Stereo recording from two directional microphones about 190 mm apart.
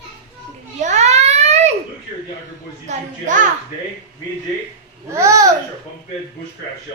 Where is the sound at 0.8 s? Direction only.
40° right (ahead or behind).